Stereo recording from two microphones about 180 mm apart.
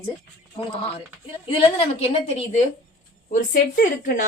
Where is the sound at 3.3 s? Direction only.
50° left (ahead or behind).